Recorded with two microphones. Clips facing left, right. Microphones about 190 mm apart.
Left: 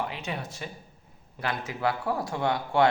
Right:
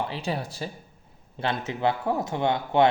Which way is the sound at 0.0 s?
30° right (ahead or behind).